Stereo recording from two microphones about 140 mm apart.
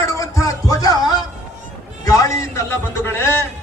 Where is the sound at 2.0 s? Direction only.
25° left (ahead or behind).